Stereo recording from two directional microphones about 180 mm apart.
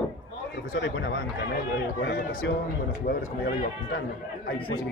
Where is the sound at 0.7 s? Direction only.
90° left; by 2.5 s 70° left (ahead or behind).